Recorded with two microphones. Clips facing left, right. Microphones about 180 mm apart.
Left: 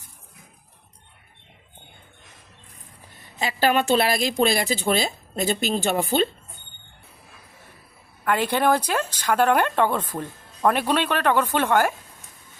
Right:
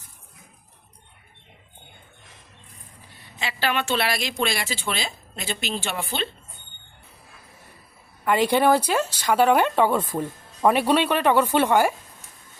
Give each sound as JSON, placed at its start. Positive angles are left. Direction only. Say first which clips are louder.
{"t": 3.3, "sound": "speech", "louder": "left 5 dB", "side_deg": 40}
{"t": 8.2, "sound": "speech", "louder": "right 2 dB", "side_deg": -10}